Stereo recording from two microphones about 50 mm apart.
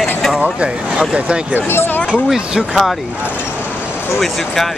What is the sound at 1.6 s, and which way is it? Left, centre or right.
Speech, left.